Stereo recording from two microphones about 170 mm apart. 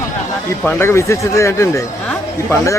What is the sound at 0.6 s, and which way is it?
Speech, 15° left (ahead or behind).